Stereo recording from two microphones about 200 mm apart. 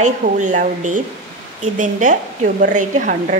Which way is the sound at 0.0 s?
40° right (ahead or behind).